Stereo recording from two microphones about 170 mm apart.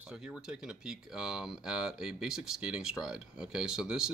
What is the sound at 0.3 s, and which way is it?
Speech, 5° right (ahead or behind).